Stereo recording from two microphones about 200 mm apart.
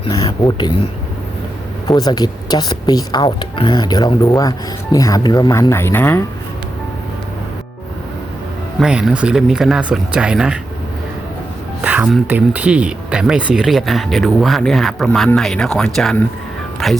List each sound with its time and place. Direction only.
0.3 s speech: 25° left (ahead or behind)
1.9 s speech: 20° left (ahead or behind)
8.8 s speech: 5° right (ahead or behind)
11.8 s speech: 5° right (ahead or behind)